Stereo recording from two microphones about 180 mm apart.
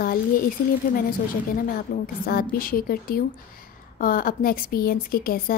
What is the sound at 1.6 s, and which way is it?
A woman's voice, 55° left (ahead or behind).